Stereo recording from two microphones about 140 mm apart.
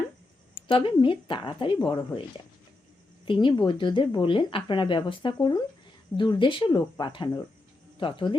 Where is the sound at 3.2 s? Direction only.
35° left (ahead or behind).